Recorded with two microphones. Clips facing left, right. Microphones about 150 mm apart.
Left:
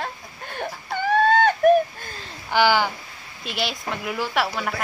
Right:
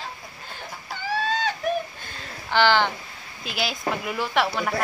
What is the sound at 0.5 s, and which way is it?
Baby cry, 55° left (ahead or behind).